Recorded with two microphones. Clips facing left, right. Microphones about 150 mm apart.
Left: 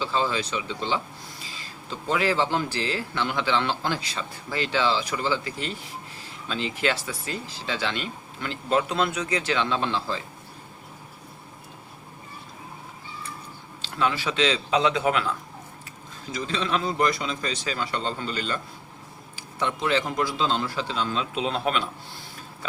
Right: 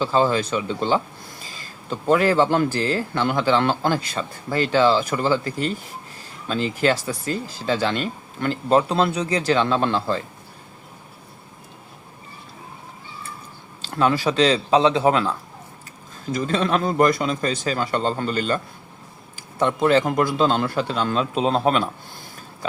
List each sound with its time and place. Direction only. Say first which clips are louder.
0.0 s a man's voice: right 7 dB; 45° right (ahead or behind)
13.8 s speech: right 6 dB; 45° right (ahead or behind)
16.3 s a man's voice: right 6 dB; 50° right (ahead or behind)
21.3 s speech: right 7 dB; 40° right (ahead or behind)